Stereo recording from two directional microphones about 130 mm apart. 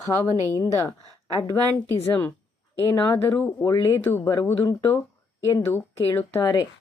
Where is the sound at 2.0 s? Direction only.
15° left (ahead or behind).